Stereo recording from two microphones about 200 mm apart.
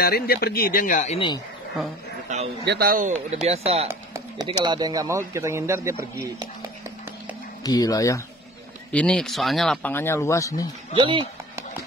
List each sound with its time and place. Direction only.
0.0 s speech: 50° left (ahead or behind); by 1.4 s 30° left (ahead or behind)
2.3 s speech: 35° right (ahead or behind)
2.6 s speech: 50° right (ahead or behind)
3.3 s speech: 30° right (ahead or behind)
4.1 s a sound: 20° right (ahead or behind)
4.6 s speech: 20° right (ahead or behind)
7.6 s speech: 20° left (ahead or behind)
8.9 s speech: 5° left (ahead or behind)
11.0 s speech: 25° right (ahead or behind)